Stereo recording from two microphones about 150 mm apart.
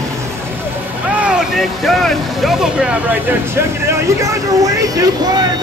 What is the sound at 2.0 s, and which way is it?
Speech, centre (ahead or behind).